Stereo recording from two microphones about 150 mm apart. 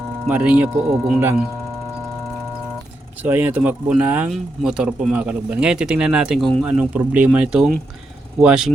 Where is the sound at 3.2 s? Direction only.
10° right (ahead or behind).